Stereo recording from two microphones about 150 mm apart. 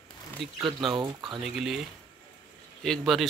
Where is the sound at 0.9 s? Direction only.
30° right (ahead or behind).